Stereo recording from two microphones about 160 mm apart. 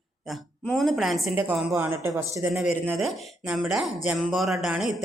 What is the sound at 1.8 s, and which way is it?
Speech, 15° right (ahead or behind).